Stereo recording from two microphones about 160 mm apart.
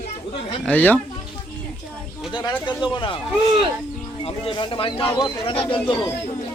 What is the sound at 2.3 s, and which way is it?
Speech, 30° left (ahead or behind).